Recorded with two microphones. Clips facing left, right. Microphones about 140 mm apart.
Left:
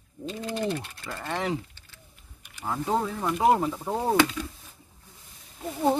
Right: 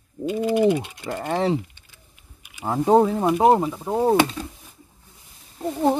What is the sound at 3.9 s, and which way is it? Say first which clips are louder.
Speech: right 6 dB; 25° right (ahead or behind).